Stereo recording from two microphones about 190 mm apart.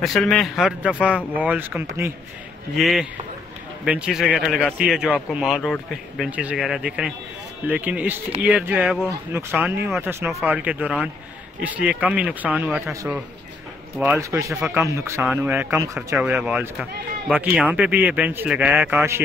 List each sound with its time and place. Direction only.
0.0 s speech: centre (ahead or behind)
2.7 s speech: centre (ahead or behind)
13.9 s speech: 5° right (ahead or behind)
16.2 s speech: 5° right (ahead or behind)